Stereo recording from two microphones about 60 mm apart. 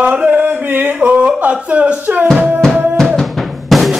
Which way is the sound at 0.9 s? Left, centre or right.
Right.